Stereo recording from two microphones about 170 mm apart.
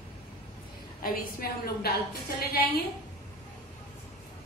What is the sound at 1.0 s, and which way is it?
Speech, 60° left (ahead or behind).